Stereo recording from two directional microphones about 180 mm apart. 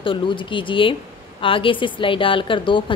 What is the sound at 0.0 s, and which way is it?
A woman's voice, 30° left (ahead or behind).